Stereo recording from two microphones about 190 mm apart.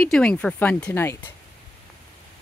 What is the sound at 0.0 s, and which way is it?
Speech, 5° left (ahead or behind).